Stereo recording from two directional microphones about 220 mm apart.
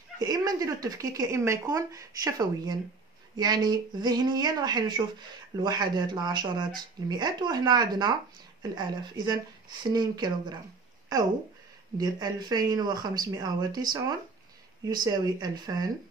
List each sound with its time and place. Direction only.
0.2 s speech: 15° right (ahead or behind)
12.0 s speech: 20° right (ahead or behind)